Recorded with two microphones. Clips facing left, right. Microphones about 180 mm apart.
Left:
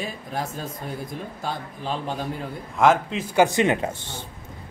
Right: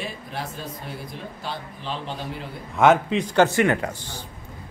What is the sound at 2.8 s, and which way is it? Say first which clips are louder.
A man's voice: right 2 dB; centre (ahead or behind).